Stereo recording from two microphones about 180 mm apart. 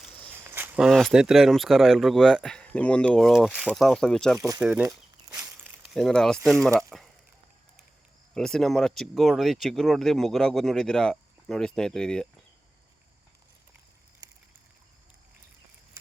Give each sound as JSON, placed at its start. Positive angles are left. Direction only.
{"t": 0.5, "sound": "speech", "side_deg": -5}
{"t": 4.4, "sound": "speech", "side_deg": -20}
{"t": 4.6, "sound": "speech", "side_deg": -5}
{"t": 5.3, "sound": "walk", "side_deg": -15}
{"t": 5.8, "sound": "speech", "side_deg": 0}
{"t": 8.3, "sound": "speech", "side_deg": 5}